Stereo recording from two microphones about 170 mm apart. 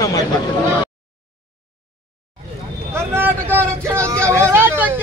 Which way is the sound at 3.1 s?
10° right (ahead or behind).